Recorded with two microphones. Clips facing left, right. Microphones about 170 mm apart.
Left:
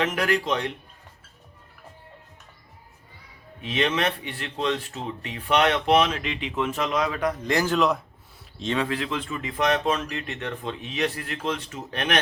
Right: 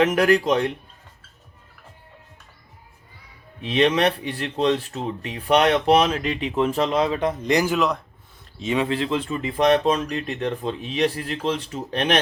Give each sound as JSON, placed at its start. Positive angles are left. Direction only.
{"t": 0.0, "sound": "speech", "side_deg": -40}
{"t": 3.6, "sound": "speech", "side_deg": -35}
{"t": 7.8, "sound": "speech", "side_deg": 0}
{"t": 8.8, "sound": "speech", "side_deg": -30}